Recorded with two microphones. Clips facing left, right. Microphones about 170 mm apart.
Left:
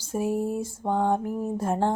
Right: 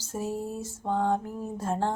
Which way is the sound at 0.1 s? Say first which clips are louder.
Left 6 dB; 15° left (ahead or behind).